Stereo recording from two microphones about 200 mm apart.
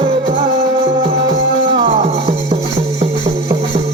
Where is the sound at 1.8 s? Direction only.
35° right (ahead or behind).